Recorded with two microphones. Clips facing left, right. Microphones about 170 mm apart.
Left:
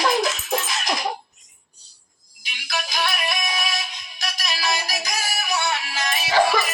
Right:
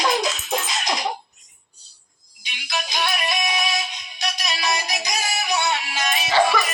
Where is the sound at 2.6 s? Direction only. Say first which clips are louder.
Even; 20° right (ahead or behind).